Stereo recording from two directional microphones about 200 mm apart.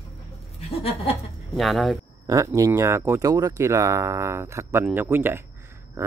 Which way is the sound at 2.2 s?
15° right (ahead or behind).